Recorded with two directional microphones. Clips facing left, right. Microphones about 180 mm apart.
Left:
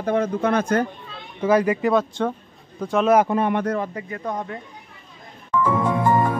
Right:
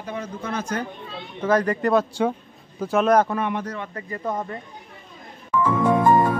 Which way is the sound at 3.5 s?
60° left (ahead or behind).